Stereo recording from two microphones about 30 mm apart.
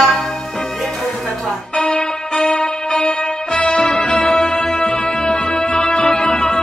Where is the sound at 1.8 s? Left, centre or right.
Left.